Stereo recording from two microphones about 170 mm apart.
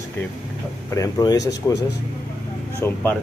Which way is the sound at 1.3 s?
90° left.